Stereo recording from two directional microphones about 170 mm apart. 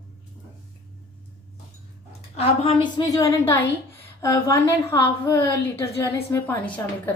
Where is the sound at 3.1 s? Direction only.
20° left (ahead or behind).